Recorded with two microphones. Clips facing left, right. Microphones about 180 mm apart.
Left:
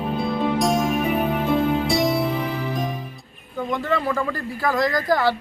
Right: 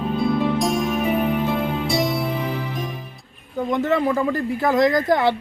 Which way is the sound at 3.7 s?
20° right (ahead or behind).